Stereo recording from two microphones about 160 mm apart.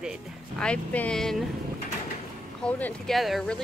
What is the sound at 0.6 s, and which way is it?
Speech, 5° left (ahead or behind).